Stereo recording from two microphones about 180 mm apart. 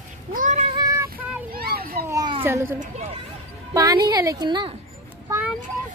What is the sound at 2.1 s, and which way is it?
Children playing, 25° right (ahead or behind).